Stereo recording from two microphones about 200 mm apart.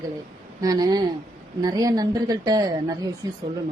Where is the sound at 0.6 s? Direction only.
20° right (ahead or behind).